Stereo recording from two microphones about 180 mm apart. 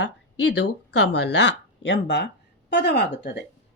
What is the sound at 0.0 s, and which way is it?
Speech, 75° left (ahead or behind).